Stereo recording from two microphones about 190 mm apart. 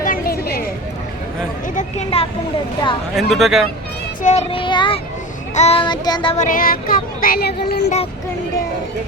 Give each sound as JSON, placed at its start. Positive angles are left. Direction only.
{"t": 0.0, "sound": "a sound", "side_deg": 50}
{"t": 1.7, "sound": "speech", "side_deg": 35}
{"t": 3.2, "sound": "speech", "side_deg": 0}
{"t": 4.2, "sound": "speech", "side_deg": 35}
{"t": 6.3, "sound": "speech", "side_deg": 45}